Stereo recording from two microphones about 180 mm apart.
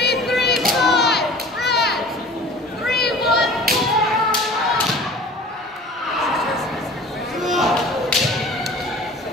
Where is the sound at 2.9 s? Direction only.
65° left (ahead or behind).